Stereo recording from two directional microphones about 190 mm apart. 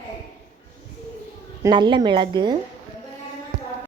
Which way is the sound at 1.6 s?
25° right (ahead or behind).